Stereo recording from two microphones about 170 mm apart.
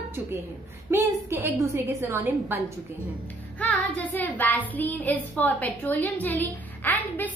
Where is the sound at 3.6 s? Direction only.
10° left (ahead or behind).